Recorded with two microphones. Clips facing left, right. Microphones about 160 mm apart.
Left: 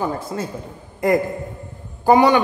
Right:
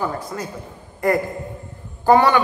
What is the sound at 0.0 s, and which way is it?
Speech, 25° left (ahead or behind).